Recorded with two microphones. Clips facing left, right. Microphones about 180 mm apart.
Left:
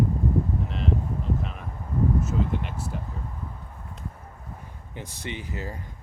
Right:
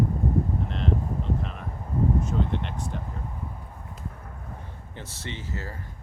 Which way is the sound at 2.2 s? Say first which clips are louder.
Even; 5° left (ahead or behind).